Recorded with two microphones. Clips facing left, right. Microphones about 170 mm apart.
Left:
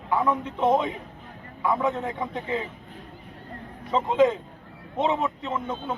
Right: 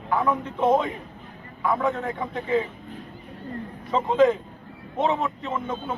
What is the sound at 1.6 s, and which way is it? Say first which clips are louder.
A man's voice: right 1 dB; 15° left (ahead or behind).